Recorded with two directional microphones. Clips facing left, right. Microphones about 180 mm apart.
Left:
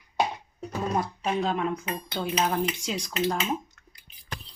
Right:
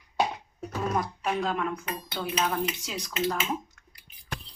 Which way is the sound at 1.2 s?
20° left (ahead or behind).